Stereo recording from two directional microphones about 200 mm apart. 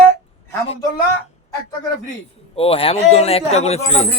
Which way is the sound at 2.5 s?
30° left (ahead or behind).